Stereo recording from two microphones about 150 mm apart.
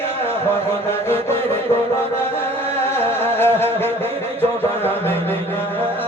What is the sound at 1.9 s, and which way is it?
Mantra, 15° left (ahead or behind).